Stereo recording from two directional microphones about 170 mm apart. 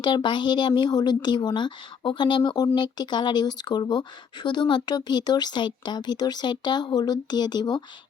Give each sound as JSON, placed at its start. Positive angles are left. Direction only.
{"t": 0.0, "sound": "speech", "side_deg": 25}